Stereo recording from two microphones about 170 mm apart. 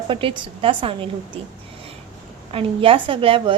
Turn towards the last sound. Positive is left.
turn(degrees=-30)  # may be behind; listen again after turning